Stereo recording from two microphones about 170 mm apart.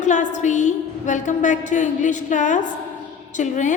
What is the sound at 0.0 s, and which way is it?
A woman's voice, 45° left (ahead or behind).